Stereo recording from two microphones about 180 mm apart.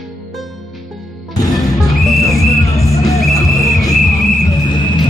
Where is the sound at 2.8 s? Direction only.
15° left (ahead or behind).